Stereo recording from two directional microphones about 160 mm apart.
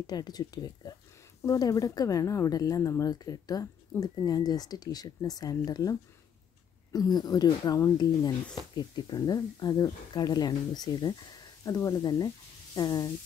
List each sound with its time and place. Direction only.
0.0 s speech: 25° left (ahead or behind)